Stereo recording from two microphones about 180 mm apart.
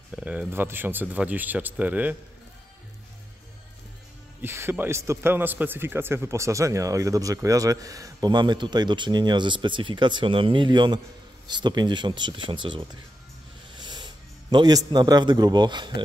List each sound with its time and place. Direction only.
0.1 s speech: 5° right (ahead or behind)
4.4 s a man's voice: 15° right (ahead or behind)